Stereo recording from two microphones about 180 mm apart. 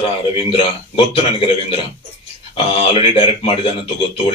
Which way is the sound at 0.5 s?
30° left (ahead or behind).